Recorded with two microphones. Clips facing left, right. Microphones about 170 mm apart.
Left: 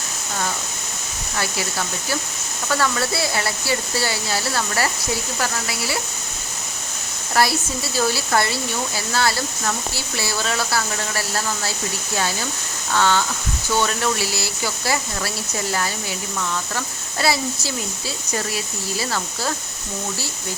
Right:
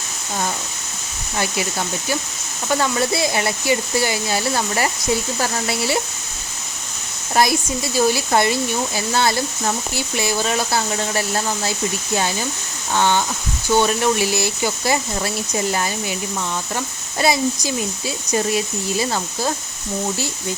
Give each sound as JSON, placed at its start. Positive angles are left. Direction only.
{"t": 2.6, "sound": "speech", "side_deg": -20}
{"t": 7.4, "sound": "speech", "side_deg": -20}